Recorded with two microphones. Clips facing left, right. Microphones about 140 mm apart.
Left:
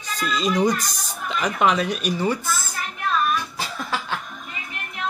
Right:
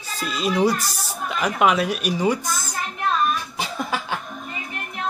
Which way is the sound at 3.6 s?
15° right (ahead or behind).